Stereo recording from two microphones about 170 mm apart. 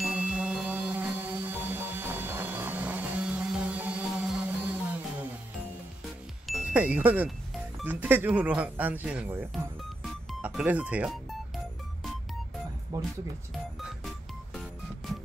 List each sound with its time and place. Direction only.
0.0 s music: 5° right (ahead or behind)
6.4 s speech: 5° right (ahead or behind)
10.0 s music: 5° right (ahead or behind)
12.9 s speech: 20° right (ahead or behind)
13.7 s music: centre (ahead or behind)